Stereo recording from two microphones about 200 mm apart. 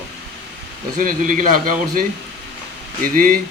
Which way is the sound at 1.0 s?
45° right (ahead or behind).